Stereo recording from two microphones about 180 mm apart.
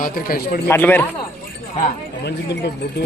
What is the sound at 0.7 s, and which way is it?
Speech, 10° left (ahead or behind).